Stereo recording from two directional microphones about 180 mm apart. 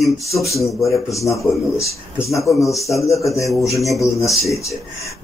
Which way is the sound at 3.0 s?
15° left (ahead or behind).